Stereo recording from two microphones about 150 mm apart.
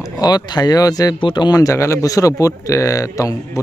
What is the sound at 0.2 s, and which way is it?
Speech, 25° left (ahead or behind).